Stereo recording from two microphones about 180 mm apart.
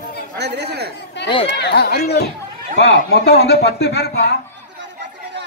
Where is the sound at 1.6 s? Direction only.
65° left (ahead or behind).